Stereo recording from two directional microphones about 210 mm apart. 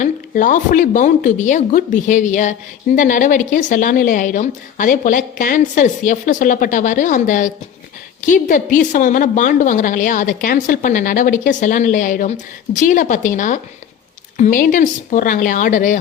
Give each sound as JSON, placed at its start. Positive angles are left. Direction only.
{"t": 0.0, "sound": "speech", "side_deg": 40}